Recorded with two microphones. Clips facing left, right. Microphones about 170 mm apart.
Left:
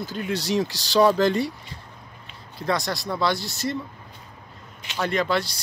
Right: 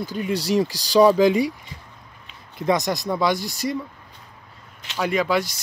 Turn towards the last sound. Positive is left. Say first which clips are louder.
# right 2 dB
turn(degrees=-10)  # may be behind; listen again after turning